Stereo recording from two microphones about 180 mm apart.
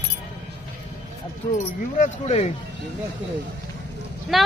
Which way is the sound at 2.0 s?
35° left (ahead or behind).